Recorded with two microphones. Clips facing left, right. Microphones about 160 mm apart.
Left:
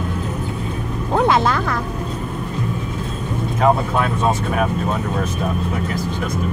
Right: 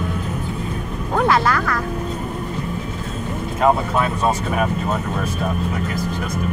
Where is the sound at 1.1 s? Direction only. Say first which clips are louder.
Left 1 dB; 20° left (ahead or behind).